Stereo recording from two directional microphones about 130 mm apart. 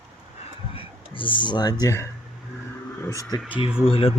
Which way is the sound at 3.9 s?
45° left (ahead or behind).